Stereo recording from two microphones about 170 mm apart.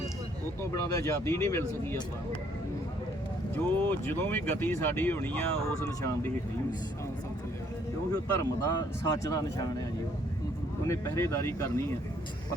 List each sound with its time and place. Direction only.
0.6 s speech: 20° left (ahead or behind)
3.8 s speech: 10° left (ahead or behind)
8.1 s speech: 20° left (ahead or behind)
10.8 s speech: 20° left (ahead or behind)